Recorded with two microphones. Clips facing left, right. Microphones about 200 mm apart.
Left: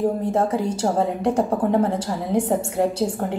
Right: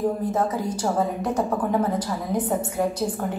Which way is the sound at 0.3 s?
30° left (ahead or behind).